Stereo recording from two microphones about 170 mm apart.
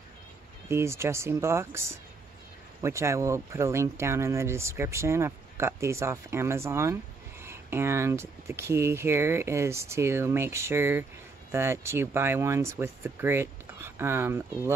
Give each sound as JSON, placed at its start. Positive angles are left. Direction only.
{"t": 0.7, "sound": "speech", "side_deg": -15}